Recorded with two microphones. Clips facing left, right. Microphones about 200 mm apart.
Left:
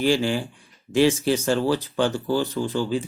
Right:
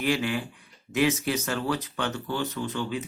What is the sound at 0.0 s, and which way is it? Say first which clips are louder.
Speech: left 5 dB; 30° left (ahead or behind).